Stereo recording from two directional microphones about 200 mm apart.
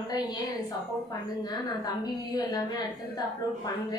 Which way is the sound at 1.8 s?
20° left (ahead or behind).